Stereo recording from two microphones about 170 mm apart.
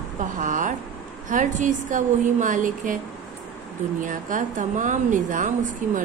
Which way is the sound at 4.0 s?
50° right (ahead or behind).